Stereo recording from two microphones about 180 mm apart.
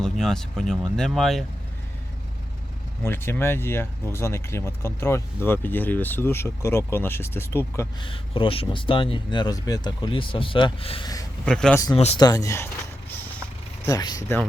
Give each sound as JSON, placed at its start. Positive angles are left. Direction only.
{"t": 0.0, "sound": "speech", "side_deg": 5}
{"t": 3.0, "sound": "speech", "side_deg": 15}
{"t": 8.0, "sound": "speech", "side_deg": 30}
{"t": 11.4, "sound": "speech", "side_deg": 5}
{"t": 12.2, "sound": "speech", "side_deg": 20}
{"t": 13.8, "sound": "speech", "side_deg": 20}